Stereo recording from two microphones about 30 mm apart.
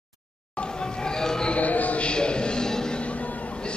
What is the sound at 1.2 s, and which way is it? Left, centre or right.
Siren, left.